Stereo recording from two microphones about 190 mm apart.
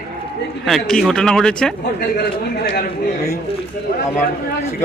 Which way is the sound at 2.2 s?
55° left (ahead or behind).